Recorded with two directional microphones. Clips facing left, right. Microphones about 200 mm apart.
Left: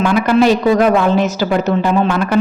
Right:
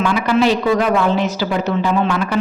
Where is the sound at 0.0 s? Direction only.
50° left (ahead or behind).